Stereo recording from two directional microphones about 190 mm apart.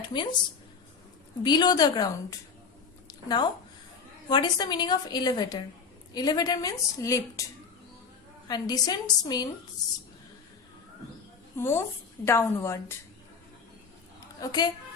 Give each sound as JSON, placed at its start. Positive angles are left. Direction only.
{"t": 0.1, "sound": "a woman's voice", "side_deg": 25}
{"t": 1.4, "sound": "a woman's voice", "side_deg": 20}
{"t": 3.1, "sound": "a sound", "side_deg": 20}
{"t": 4.3, "sound": "a woman's voice", "side_deg": 20}
{"t": 8.4, "sound": "a woman's voice", "side_deg": 20}
{"t": 11.5, "sound": "a woman's voice", "side_deg": 15}
{"t": 14.2, "sound": "a sound", "side_deg": 20}